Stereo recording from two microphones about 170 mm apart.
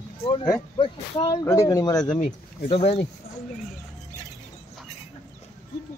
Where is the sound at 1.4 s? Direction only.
15° left (ahead or behind).